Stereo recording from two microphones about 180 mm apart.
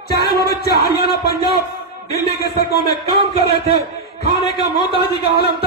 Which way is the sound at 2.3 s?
60° left (ahead or behind).